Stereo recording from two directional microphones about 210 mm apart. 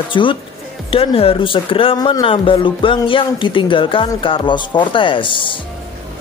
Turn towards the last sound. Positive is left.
turn(degrees=25)  # may be behind; listen again after turning